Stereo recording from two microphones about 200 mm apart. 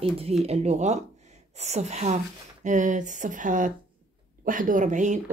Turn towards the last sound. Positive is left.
turn(degrees=-40)  # may be behind; listen again after turning